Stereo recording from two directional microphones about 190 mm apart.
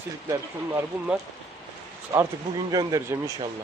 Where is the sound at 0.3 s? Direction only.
15° right (ahead or behind).